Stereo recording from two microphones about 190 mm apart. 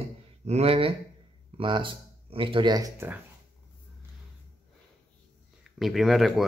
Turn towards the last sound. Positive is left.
turn(degrees=0)  # may be behind; listen again after turning